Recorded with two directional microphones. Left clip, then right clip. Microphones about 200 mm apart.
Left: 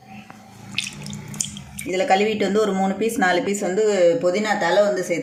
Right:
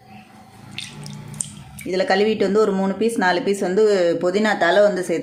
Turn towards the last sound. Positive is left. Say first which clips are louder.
# right 2 dB
turn(degrees=-50)  # may be behind; listen again after turning